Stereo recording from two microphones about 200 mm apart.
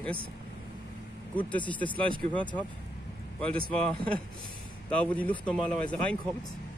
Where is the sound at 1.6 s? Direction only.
25° left (ahead or behind).